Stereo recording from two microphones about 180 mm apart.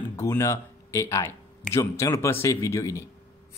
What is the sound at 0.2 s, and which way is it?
Speech, 15° left (ahead or behind).